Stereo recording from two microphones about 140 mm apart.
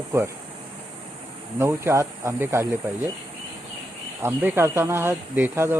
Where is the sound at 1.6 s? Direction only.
20° right (ahead or behind).